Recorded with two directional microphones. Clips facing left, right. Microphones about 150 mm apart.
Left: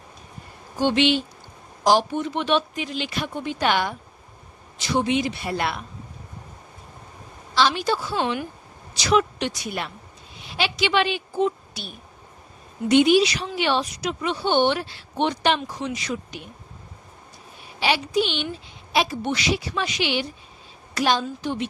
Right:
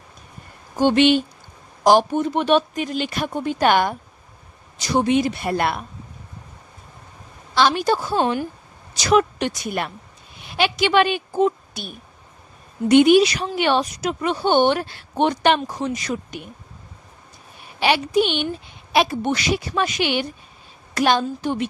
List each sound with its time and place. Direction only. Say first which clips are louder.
0.7 s speech: right 5 dB; 50° right (ahead or behind)
7.5 s a woman's voice: right 3 dB; 50° right (ahead or behind)
17.7 s speech: right 4 dB; 55° right (ahead or behind)